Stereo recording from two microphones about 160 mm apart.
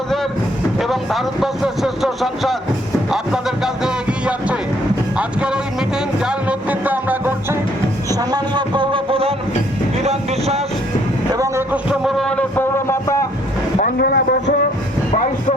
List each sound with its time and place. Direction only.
0.8 s speech: centre (ahead or behind)
5.1 s music: 5° right (ahead or behind)
8.2 s a man's voice: 25° right (ahead or behind)
10.0 s wind noise: 40° right (ahead or behind)
11.3 s a man's voice: 20° right (ahead or behind); by 13.1 s 15° left (ahead or behind)
14.0 s a man's voice: 80° left